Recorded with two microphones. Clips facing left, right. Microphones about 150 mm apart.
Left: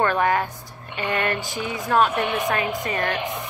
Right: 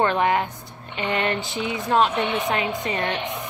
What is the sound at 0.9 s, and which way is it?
A woman's voice, 25° right (ahead or behind).